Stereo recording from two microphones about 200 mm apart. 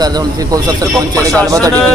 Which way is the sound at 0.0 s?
20° right (ahead or behind).